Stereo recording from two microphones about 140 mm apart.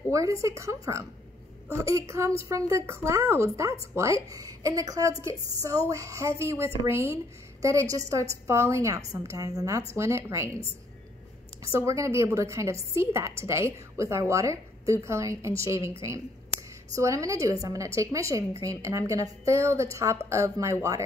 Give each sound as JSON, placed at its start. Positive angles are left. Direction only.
{"t": 0.1, "sound": "speech", "side_deg": -20}
{"t": 11.6, "sound": "speech", "side_deg": -20}
{"t": 16.9, "sound": "speech", "side_deg": -25}